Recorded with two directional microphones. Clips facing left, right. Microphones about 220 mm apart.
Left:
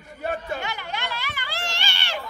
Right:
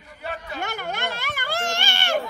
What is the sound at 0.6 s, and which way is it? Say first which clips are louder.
Speech: right 3 dB; 50° right (ahead or behind).